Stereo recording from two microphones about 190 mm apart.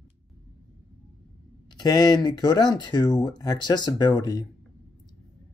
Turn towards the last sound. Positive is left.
turn(degrees=20)  # may be behind; listen again after turning